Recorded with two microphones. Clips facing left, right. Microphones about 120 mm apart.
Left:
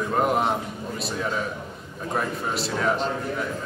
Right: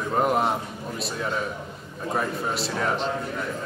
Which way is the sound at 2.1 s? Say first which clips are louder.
Even; centre (ahead or behind).